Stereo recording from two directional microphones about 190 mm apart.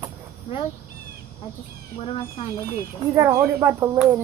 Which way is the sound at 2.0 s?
30° left (ahead or behind).